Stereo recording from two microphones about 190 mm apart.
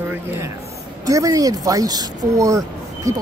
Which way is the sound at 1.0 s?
20° right (ahead or behind).